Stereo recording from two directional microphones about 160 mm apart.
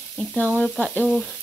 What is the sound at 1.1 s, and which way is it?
Frying, 5° left (ahead or behind).